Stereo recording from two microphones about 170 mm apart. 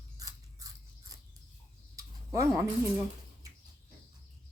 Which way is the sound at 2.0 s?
20° right (ahead or behind).